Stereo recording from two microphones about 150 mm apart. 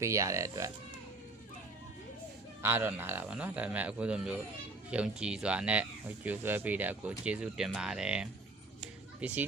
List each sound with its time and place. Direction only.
0.0 s speech: 20° right (ahead or behind)
2.6 s speech: 15° right (ahead or behind)